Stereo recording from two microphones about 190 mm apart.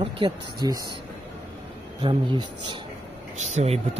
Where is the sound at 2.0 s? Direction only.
25° right (ahead or behind).